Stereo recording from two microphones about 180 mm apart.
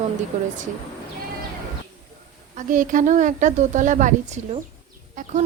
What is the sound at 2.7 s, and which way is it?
A woman's voice, 45° right (ahead or behind).